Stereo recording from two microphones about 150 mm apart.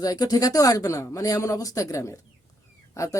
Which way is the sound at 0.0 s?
25° left (ahead or behind).